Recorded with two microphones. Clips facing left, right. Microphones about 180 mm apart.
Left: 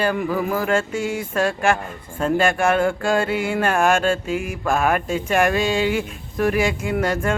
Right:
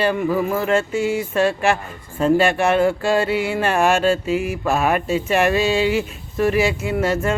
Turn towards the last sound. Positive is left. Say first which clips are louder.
# right 1 dB
turn(degrees=-5)  # may be behind; listen again after turning